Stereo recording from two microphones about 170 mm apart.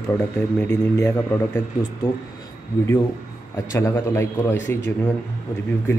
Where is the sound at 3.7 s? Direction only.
15° left (ahead or behind).